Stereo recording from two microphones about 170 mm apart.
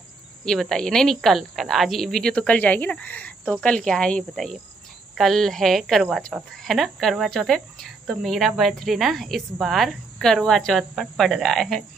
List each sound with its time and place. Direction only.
0.5 s a woman's voice: 5° left (ahead or behind)